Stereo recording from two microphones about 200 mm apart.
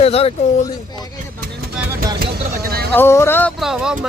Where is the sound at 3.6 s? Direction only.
5° right (ahead or behind).